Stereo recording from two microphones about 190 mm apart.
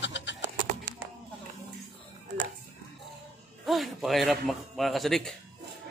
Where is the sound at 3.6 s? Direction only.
Centre (ahead or behind).